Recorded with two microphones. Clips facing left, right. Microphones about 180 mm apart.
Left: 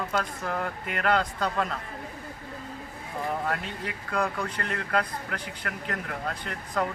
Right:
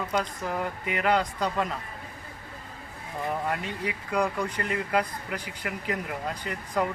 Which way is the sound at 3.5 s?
5° right (ahead or behind).